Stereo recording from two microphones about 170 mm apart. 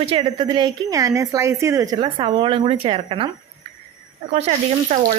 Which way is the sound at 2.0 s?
30° right (ahead or behind).